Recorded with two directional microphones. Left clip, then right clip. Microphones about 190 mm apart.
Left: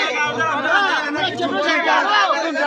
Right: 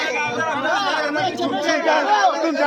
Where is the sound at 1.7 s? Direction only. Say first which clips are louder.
Left 1 dB; 35° right (ahead or behind).